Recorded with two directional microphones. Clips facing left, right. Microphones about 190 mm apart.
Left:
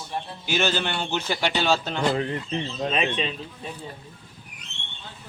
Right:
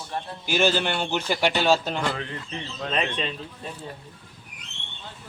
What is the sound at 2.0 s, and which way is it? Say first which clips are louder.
Speech: left 5 dB; 30° left (ahead or behind).